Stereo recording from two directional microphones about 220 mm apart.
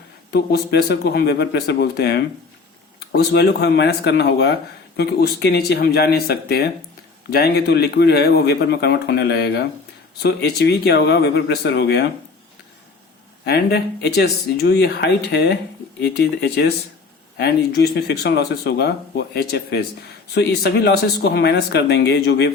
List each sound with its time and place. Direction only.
0.3 s speech: 45° left (ahead or behind)
13.4 s speech: 50° left (ahead or behind)